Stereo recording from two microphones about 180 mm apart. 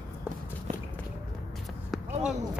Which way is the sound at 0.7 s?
40° right (ahead or behind).